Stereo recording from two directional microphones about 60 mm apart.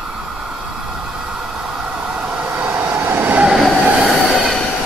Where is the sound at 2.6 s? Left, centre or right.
Right.